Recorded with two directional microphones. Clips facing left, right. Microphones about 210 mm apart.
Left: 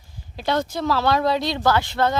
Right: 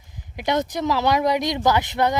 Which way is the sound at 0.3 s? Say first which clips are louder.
Right 1 dB; 20° right (ahead or behind).